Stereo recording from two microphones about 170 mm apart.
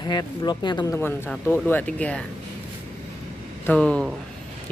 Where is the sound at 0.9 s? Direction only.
10° left (ahead or behind).